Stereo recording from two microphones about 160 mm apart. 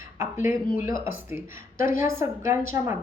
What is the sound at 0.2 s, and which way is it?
Speech, 15° right (ahead or behind).